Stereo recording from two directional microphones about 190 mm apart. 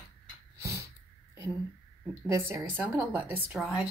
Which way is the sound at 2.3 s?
15° right (ahead or behind).